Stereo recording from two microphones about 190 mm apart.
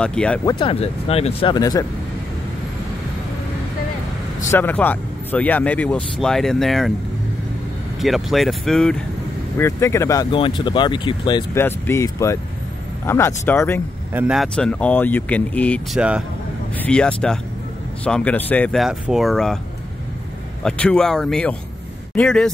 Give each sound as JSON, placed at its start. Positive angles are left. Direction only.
{"t": 0.0, "sound": "speech", "side_deg": 5}
{"t": 0.5, "sound": "speech", "side_deg": 30}
{"t": 4.5, "sound": "speech", "side_deg": 10}
{"t": 8.0, "sound": "speech", "side_deg": 0}
{"t": 11.5, "sound": "speech", "side_deg": 10}
{"t": 14.1, "sound": "speech", "side_deg": -5}
{"t": 16.0, "sound": "speech", "side_deg": -5}
{"t": 16.7, "sound": "speech", "side_deg": 5}
{"t": 20.6, "sound": "speech", "side_deg": 5}